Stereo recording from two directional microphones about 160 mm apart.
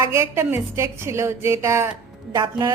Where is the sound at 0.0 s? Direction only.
20° right (ahead or behind).